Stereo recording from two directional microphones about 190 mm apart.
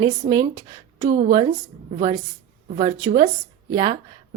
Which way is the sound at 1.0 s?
40° right (ahead or behind).